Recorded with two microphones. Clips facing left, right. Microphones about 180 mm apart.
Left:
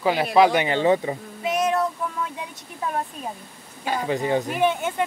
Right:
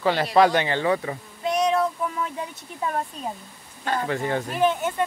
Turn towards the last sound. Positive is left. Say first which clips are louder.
# even
turn(degrees=10)  # may be behind; listen again after turning